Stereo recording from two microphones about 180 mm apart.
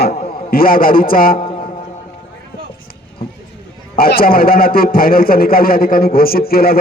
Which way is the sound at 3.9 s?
55° left (ahead or behind).